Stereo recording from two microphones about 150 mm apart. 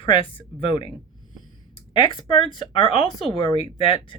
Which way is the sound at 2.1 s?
35° left (ahead or behind).